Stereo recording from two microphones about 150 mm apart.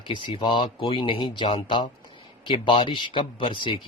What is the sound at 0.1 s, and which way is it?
Speech, 35° left (ahead or behind).